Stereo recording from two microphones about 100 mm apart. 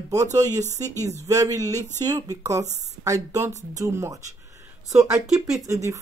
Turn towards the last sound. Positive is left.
turn(degrees=-30)  # may be behind; listen again after turning